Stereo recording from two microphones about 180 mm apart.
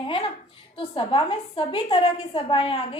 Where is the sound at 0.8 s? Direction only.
30° left (ahead or behind).